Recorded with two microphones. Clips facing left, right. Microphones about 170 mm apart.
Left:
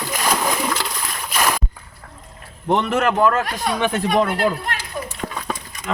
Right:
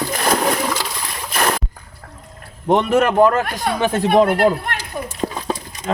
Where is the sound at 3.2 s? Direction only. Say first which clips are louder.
Right 4 dB; 35° right (ahead or behind).